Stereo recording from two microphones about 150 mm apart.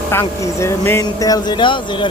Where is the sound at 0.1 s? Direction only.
15° left (ahead or behind).